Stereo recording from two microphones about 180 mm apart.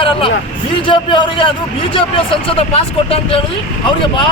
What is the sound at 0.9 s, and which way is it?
Speech, 25° left (ahead or behind).